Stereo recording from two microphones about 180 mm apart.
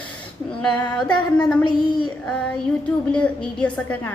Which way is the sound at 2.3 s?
5° left (ahead or behind).